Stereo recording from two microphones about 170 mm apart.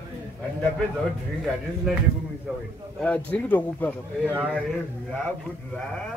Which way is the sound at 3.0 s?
10° left (ahead or behind).